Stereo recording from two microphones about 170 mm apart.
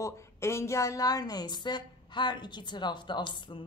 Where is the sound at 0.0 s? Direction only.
15° left (ahead or behind).